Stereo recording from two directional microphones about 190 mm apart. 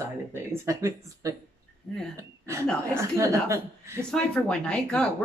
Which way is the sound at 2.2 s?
15° right (ahead or behind).